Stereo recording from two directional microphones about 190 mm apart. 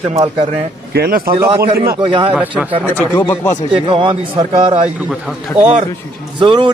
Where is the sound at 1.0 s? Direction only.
50° right (ahead or behind).